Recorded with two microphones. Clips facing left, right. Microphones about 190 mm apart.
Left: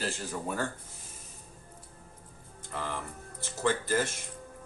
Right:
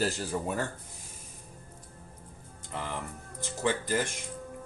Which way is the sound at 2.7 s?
15° right (ahead or behind).